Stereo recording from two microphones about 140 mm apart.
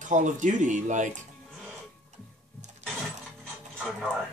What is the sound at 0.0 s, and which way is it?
Speech, 60° right (ahead or behind).